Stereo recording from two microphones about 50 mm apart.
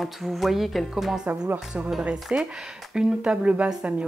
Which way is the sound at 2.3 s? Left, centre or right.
Right.